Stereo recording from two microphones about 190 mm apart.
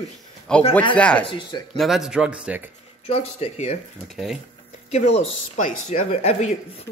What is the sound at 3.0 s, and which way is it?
Speech, 35° left (ahead or behind).